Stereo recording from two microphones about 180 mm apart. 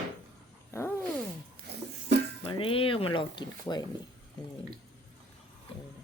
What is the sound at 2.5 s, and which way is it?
Speech, 30° left (ahead or behind).